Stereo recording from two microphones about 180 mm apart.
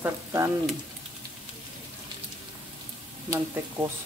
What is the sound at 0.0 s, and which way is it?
Speech, 15° right (ahead or behind).